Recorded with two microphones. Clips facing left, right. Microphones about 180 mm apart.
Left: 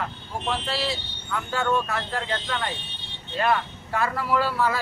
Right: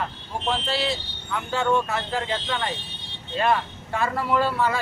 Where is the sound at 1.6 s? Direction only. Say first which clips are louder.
Right 2 dB; 25° right (ahead or behind).